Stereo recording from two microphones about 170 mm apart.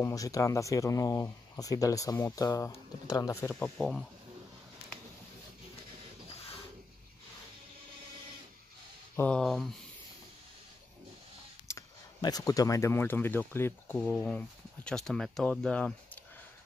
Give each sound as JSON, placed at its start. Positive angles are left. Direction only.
{"t": 0.0, "sound": "speech", "side_deg": 20}
{"t": 3.7, "sound": "speech", "side_deg": 0}
{"t": 9.1, "sound": "speech", "side_deg": 10}
{"t": 11.6, "sound": "speech", "side_deg": 20}